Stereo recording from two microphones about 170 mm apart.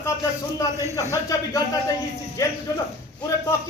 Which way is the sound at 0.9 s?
20° left (ahead or behind).